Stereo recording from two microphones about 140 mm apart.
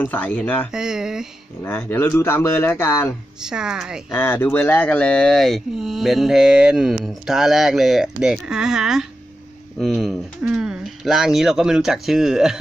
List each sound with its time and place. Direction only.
0.0 s speech: 10° left (ahead or behind)
0.7 s a sound: 5° right (ahead or behind)
1.6 s speech: 15° left (ahead or behind)
3.4 s speech: 5° right (ahead or behind)
4.1 s speech: 15° left (ahead or behind); by 12.5 s 5° right (ahead or behind)